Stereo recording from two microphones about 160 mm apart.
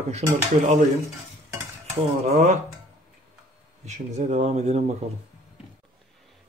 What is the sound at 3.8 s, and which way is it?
Speech, 45° right (ahead or behind).